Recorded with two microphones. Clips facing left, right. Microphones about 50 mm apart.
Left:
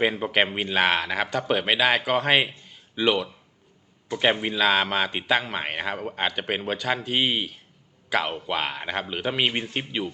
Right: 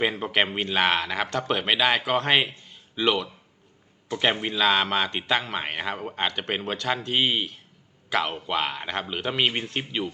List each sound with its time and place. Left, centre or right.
0.0 s speech: centre